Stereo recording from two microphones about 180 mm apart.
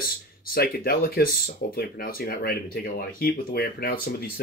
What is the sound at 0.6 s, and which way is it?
Speech, 55° left (ahead or behind).